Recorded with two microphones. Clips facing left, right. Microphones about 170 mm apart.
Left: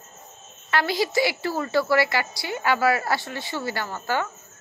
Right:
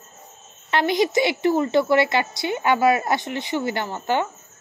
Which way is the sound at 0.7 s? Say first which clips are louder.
Right 3 dB; 20° right (ahead or behind).